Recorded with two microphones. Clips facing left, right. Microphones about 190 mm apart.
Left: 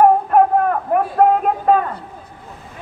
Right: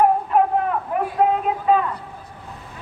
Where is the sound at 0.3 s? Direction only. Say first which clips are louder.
Left 5 dB; 55° left (ahead or behind).